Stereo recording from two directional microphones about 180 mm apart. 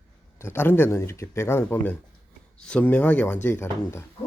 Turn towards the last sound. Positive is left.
turn(degrees=10)  # may be behind; listen again after turning